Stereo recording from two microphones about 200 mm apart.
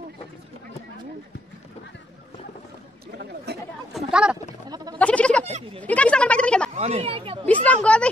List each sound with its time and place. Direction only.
3.9 s a sound: 5° right (ahead or behind)
4.6 s sheep: 20° right (ahead or behind)
4.9 s a sound: 5° left (ahead or behind)
5.8 s speech: 5° left (ahead or behind)
6.7 s speech: 30° right (ahead or behind)
7.4 s a woman's voice: 5° left (ahead or behind)